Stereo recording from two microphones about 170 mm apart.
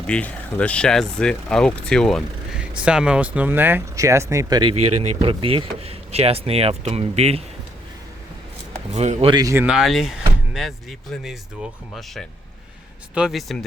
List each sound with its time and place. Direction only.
0.1 s speech: 10° left (ahead or behind); by 4.7 s 20° right (ahead or behind)
4.8 s speech: 35° right (ahead or behind)
8.7 s a man's voice: 40° right (ahead or behind)
9.3 s speech: 20° right (ahead or behind)
9.6 s speech: centre (ahead or behind)